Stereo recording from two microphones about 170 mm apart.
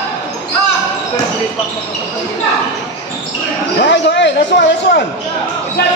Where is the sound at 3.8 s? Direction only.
90° left.